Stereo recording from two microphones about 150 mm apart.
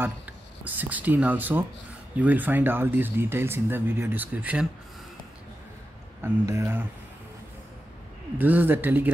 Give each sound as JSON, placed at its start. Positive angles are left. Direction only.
{"t": 0.7, "sound": "speech", "side_deg": -10}
{"t": 6.2, "sound": "speech", "side_deg": -20}
{"t": 8.4, "sound": "speech", "side_deg": -10}